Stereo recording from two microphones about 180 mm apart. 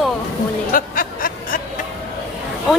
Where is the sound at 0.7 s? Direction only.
50° left (ahead or behind).